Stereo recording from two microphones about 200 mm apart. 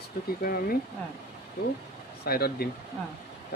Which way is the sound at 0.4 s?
45° left (ahead or behind).